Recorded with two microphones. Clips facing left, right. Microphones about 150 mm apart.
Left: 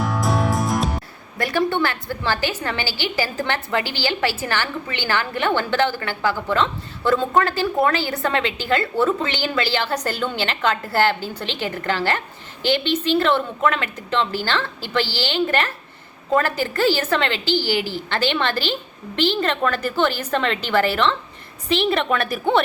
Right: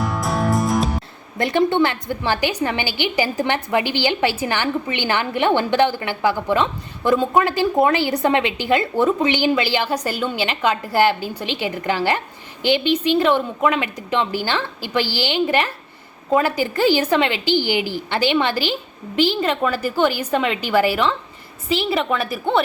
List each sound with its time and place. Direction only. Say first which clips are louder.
0.0 s music: even; centre (ahead or behind)
1.4 s a woman's voice: right 4 dB; 20° right (ahead or behind); by 22.6 s centre (ahead or behind)